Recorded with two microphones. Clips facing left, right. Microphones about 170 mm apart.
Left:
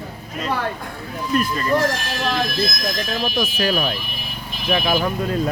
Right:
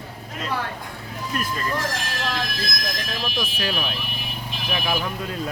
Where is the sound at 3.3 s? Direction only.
85° left.